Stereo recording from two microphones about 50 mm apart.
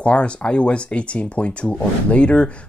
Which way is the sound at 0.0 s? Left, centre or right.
Left.